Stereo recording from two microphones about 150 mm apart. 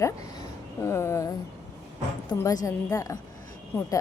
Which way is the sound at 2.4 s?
25° left (ahead or behind).